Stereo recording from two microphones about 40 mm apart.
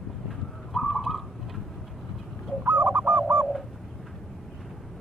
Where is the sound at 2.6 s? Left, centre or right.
Right.